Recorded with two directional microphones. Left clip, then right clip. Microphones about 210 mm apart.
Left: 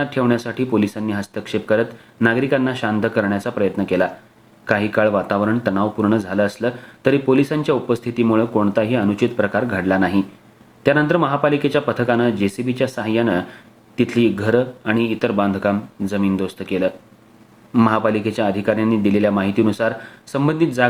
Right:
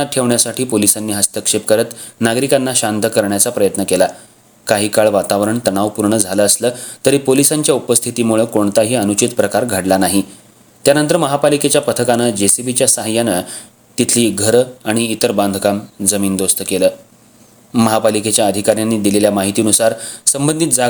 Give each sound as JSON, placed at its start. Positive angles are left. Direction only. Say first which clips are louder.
{"t": 0.0, "sound": "speech", "louder": "right 4 dB", "side_deg": -45}
{"t": 4.6, "sound": "speech", "louder": "right 5 dB", "side_deg": -40}
{"t": 12.7, "sound": "speech", "louder": "right 4 dB", "side_deg": -35}
{"t": 14.1, "sound": "speech", "louder": "right 4 dB", "side_deg": -35}
{"t": 14.5, "sound": "speech", "louder": "right 5 dB", "side_deg": -50}